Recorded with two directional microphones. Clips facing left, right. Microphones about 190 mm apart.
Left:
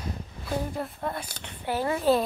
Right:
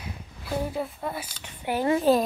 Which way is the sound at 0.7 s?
5° right (ahead or behind).